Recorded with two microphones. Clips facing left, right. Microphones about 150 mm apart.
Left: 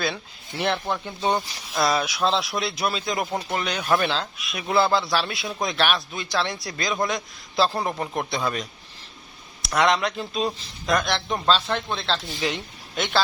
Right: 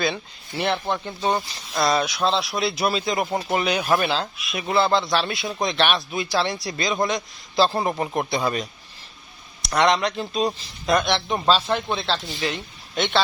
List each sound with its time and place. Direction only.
0.0 s a man's voice: centre (ahead or behind)
1.0 s speech: 15° left (ahead or behind)
1.4 s a man's voice: centre (ahead or behind)
12.4 s speech: 15° left (ahead or behind)